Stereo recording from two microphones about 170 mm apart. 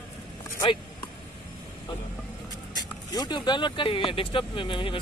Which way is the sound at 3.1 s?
25° left (ahead or behind).